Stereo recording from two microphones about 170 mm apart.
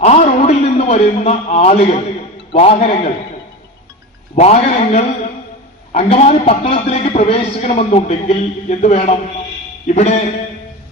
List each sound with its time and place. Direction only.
0.0 s a sound: 40° left (ahead or behind)
2.5 s a man's voice: 35° left (ahead or behind)
4.4 s a man's voice: 40° left (ahead or behind)